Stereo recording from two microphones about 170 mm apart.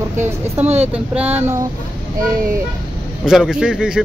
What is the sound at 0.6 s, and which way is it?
Speech, 40° right (ahead or behind).